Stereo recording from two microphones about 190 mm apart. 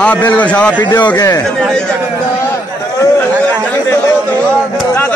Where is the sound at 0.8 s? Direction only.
25° left (ahead or behind).